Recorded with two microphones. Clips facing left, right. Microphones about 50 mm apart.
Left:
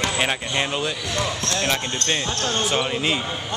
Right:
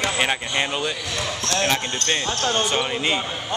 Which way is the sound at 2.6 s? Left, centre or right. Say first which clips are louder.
Even; centre.